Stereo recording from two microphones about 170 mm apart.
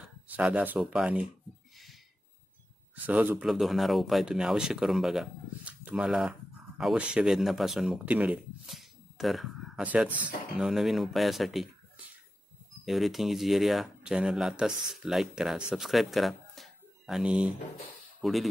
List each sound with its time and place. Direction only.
0.0 s speech: 5° right (ahead or behind)
3.1 s speech: 10° right (ahead or behind)
12.8 s speech: centre (ahead or behind)